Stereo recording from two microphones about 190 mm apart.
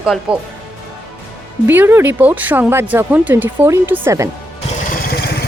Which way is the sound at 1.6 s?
10° right (ahead or behind).